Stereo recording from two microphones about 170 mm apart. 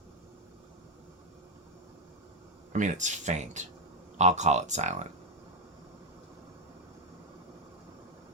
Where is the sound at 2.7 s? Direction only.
45° right (ahead or behind).